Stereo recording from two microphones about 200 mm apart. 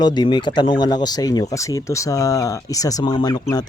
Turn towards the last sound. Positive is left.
turn(degrees=20)  # may be behind; listen again after turning